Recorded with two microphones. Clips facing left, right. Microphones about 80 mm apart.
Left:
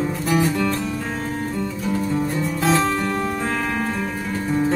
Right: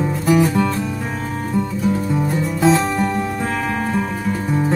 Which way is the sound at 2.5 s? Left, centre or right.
Centre.